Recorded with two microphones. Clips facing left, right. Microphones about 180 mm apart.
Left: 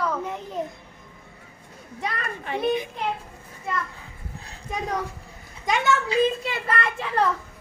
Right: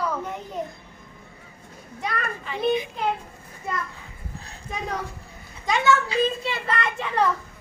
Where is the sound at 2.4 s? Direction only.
60° left (ahead or behind).